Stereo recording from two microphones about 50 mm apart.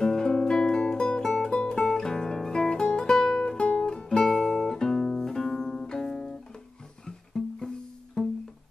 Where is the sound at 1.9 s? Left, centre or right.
Centre.